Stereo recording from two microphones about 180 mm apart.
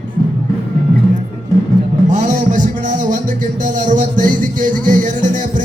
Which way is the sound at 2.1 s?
45° right (ahead or behind).